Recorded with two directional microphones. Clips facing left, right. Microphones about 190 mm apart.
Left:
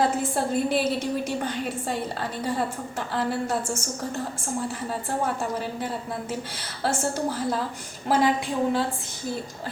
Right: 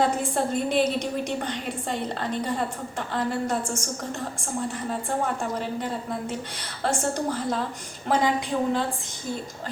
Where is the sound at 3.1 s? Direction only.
5° left (ahead or behind).